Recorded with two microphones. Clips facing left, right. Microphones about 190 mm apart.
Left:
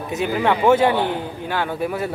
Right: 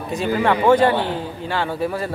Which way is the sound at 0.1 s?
5° left (ahead or behind).